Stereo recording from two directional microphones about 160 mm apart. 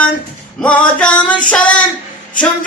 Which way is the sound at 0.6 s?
5° left (ahead or behind).